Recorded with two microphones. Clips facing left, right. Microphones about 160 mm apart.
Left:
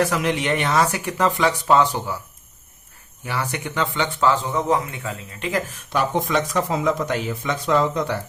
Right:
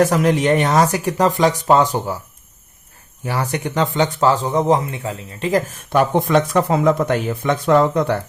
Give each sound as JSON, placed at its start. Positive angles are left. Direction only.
{"t": 0.0, "sound": "speech", "side_deg": -45}
{"t": 3.2, "sound": "speech", "side_deg": -40}
{"t": 5.9, "sound": "speech", "side_deg": -55}